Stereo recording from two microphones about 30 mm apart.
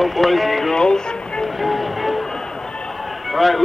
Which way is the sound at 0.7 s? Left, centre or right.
Left.